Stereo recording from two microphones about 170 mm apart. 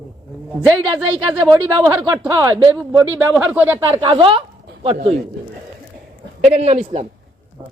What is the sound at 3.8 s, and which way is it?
Speech, 25° right (ahead or behind).